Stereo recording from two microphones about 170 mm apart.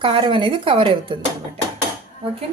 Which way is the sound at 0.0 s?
30° right (ahead or behind).